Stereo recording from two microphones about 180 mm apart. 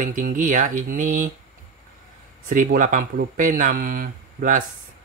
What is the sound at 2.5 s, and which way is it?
Speech, 45° right (ahead or behind).